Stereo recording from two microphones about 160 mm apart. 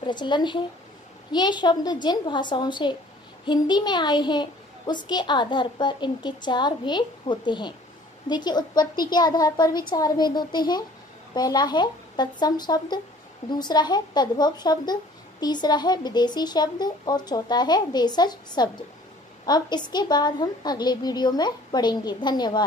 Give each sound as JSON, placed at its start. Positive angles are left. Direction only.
{"t": 0.0, "sound": "speech", "side_deg": 30}